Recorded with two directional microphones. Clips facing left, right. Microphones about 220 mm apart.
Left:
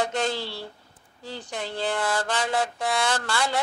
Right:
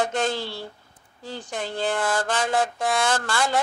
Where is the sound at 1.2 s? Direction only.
50° right (ahead or behind).